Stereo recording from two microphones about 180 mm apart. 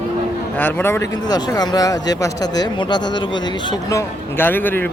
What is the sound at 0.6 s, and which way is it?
A man's voice, 10° left (ahead or behind).